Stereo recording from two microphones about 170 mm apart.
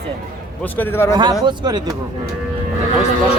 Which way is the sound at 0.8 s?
15° left (ahead or behind).